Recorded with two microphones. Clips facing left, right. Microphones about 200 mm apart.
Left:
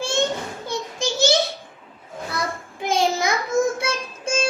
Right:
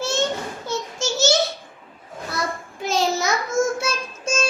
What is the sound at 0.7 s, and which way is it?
Child singing, 55° left (ahead or behind).